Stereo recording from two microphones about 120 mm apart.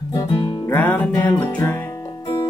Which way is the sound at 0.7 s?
15° left (ahead or behind).